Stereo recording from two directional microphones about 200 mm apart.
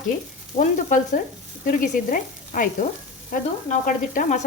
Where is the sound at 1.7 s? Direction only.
40° left (ahead or behind).